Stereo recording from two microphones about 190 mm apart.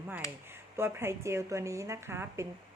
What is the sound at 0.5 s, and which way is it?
A woman's voice, 10° right (ahead or behind).